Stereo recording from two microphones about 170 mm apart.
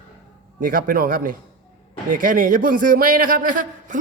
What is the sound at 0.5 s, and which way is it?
A man's voice, 55° right (ahead or behind).